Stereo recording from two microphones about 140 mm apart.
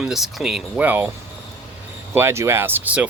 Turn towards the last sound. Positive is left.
turn(degrees=-15)  # may be behind; listen again after turning